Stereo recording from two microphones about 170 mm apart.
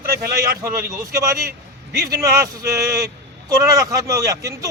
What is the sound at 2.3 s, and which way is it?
Speech, 20° right (ahead or behind).